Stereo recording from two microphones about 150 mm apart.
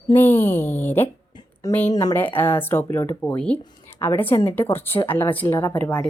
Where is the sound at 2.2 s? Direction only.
15° left (ahead or behind).